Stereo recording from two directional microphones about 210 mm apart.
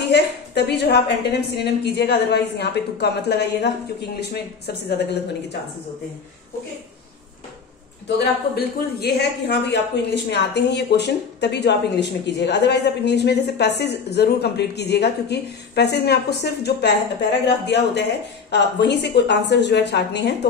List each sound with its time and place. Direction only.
0.0 s speech: 55° left (ahead or behind)
8.2 s speech: 50° left (ahead or behind)